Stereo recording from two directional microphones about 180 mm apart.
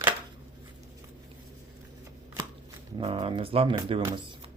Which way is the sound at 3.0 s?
30° right (ahead or behind).